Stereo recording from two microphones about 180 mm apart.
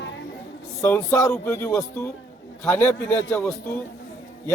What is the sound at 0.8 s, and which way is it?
Speech, 15° left (ahead or behind).